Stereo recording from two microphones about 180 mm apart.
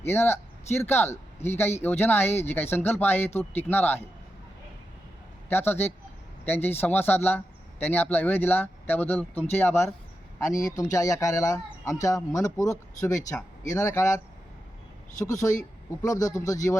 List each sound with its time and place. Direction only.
0.0 s speech: 15° left (ahead or behind)
5.5 s speech: 10° left (ahead or behind)
15.2 s speech: 20° left (ahead or behind)